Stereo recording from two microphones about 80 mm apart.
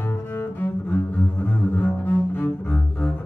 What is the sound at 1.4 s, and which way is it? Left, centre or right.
Double bass, left.